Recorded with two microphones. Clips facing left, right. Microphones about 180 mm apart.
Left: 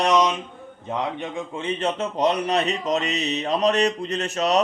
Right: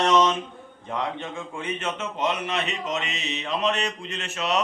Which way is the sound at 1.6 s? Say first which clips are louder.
Left 6 dB; 35° left (ahead or behind).